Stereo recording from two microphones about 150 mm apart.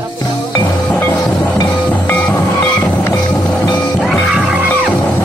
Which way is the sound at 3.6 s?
25° left (ahead or behind).